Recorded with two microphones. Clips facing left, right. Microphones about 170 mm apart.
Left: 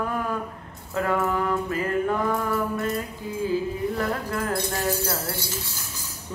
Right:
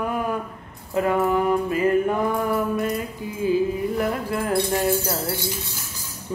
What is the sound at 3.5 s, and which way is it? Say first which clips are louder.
Music: right 6 dB; 15° right (ahead or behind).